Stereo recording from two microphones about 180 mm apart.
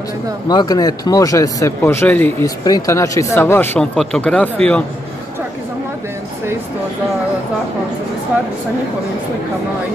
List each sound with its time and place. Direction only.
0.5 s speech: 20° left (ahead or behind); by 4.8 s 5° left (ahead or behind)